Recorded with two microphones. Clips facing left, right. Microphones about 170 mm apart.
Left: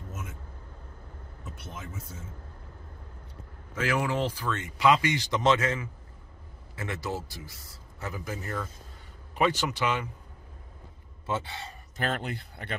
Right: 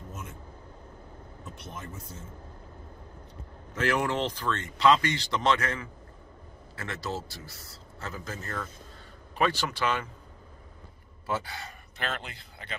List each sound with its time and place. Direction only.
0.1 s vehicle: 5° left (ahead or behind)
1.4 s speech: 5° left (ahead or behind)
3.8 s a man's voice: 5° left (ahead or behind)
11.2 s speech: 25° left (ahead or behind)
12.0 s speech: 50° left (ahead or behind)